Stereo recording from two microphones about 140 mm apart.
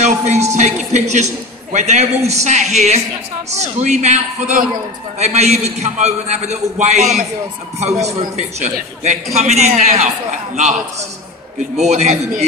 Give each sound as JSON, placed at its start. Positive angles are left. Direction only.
{"t": 0.0, "sound": "a man's voice", "side_deg": -55}